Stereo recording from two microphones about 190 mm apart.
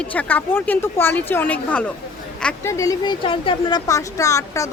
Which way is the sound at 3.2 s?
30° left (ahead or behind).